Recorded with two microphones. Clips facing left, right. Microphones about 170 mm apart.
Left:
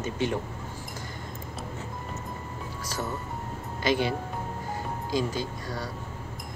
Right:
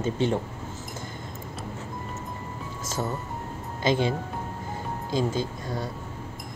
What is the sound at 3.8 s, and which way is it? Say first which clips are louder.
Speech: right 2 dB; 25° right (ahead or behind).